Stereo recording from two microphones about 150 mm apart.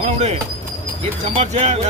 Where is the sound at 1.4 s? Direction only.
50° right (ahead or behind).